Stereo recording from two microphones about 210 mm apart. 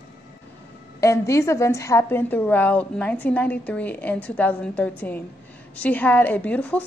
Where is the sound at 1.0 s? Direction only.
15° left (ahead or behind).